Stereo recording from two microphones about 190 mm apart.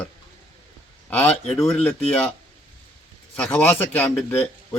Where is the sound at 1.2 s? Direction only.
5° left (ahead or behind).